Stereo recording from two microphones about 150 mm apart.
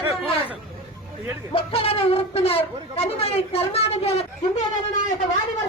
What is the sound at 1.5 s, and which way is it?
Speech, 40° left (ahead or behind).